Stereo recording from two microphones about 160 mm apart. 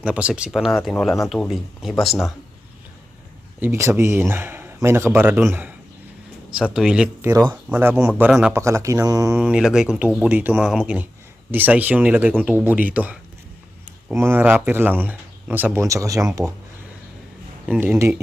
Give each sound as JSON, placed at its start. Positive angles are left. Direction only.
{"t": 0.0, "sound": "speech", "side_deg": -5}
{"t": 3.6, "sound": "speech", "side_deg": -15}
{"t": 6.7, "sound": "speech", "side_deg": -5}
{"t": 8.3, "sound": "speech", "side_deg": 0}
{"t": 8.5, "sound": "speech", "side_deg": -20}
{"t": 9.4, "sound": "speech", "side_deg": -5}
{"t": 14.2, "sound": "speech", "side_deg": -15}
{"t": 17.7, "sound": "speech", "side_deg": -10}